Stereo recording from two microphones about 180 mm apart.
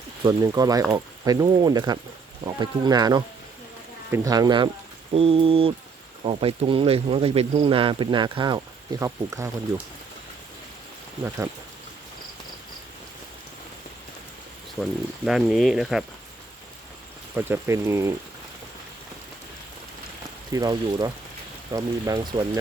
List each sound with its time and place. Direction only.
0.3 s speech: 20° right (ahead or behind)
14.8 s speech: centre (ahead or behind)
17.3 s speech: 15° right (ahead or behind)
20.5 s speech: 20° right (ahead or behind)